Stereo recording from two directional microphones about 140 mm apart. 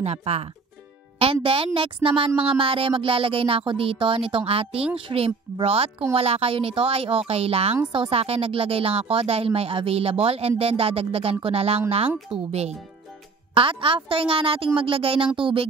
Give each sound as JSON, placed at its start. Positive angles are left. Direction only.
{"t": 0.0, "sound": "speech", "side_deg": -45}